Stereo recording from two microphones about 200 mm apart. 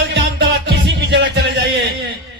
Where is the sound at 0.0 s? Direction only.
60° right (ahead or behind).